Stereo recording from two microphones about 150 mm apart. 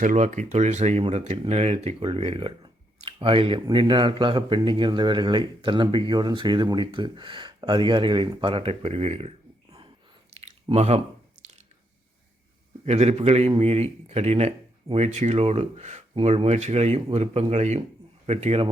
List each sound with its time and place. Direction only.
0.0 s speech: 60° right (ahead or behind)
10.3 s a sound: 45° right (ahead or behind)
12.8 s speech: 45° right (ahead or behind)